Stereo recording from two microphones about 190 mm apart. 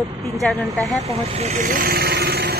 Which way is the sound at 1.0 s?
35° right (ahead or behind).